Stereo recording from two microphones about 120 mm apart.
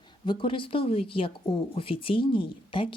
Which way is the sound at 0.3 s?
45° left (ahead or behind).